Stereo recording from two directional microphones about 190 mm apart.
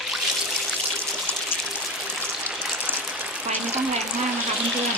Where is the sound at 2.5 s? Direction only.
5° right (ahead or behind).